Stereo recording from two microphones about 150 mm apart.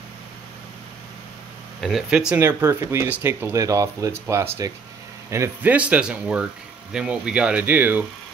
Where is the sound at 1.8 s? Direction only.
5° right (ahead or behind).